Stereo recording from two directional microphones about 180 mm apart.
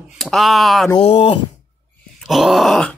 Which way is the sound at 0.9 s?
30° left (ahead or behind).